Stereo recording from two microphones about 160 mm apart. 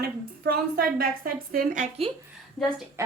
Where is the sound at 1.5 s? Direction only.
55° right (ahead or behind).